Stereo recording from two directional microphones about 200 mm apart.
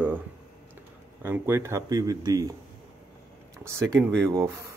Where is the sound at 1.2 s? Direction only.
10° right (ahead or behind).